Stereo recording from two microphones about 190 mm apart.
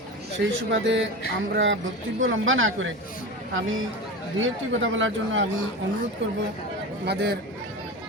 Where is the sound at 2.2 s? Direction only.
90° right.